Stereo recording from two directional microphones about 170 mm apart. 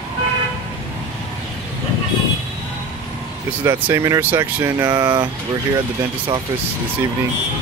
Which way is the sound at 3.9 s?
20° right (ahead or behind).